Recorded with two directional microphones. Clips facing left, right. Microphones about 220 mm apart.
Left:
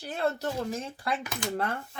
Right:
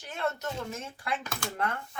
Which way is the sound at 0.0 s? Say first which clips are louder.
Left 4 dB; 35° left (ahead or behind).